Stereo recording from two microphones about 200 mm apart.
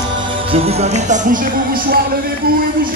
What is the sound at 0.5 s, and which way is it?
Music, 30° right (ahead or behind).